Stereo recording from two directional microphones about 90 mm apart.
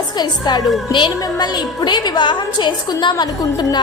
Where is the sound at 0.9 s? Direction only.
60° left (ahead or behind).